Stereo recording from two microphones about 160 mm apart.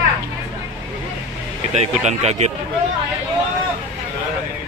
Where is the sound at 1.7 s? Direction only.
45° right (ahead or behind).